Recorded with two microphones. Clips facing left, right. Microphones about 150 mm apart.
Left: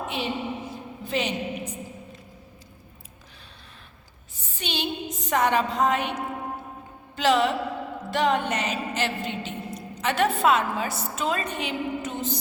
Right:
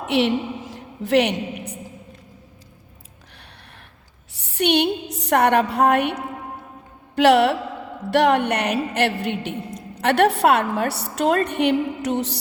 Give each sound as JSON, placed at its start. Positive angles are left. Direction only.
{"t": 0.0, "sound": "a woman's voice", "side_deg": -80}
{"t": 4.4, "sound": "a woman's voice", "side_deg": -70}